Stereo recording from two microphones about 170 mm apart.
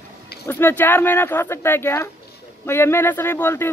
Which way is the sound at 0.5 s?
10° left (ahead or behind).